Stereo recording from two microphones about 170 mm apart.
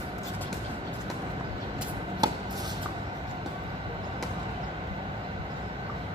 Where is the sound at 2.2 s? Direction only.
25° right (ahead or behind).